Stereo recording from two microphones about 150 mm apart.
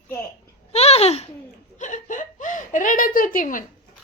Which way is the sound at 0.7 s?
45° left (ahead or behind).